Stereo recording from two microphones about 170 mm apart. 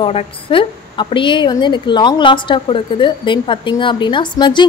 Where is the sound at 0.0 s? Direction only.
30° left (ahead or behind).